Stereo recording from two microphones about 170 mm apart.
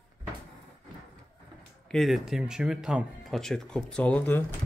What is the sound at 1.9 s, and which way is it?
Speech, centre (ahead or behind).